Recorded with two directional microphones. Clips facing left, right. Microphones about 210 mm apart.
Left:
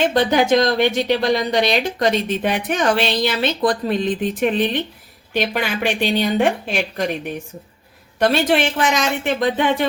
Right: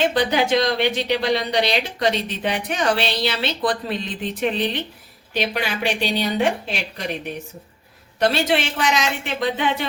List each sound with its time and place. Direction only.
0.1 s speech: 45° left (ahead or behind)
8.2 s speech: 50° left (ahead or behind)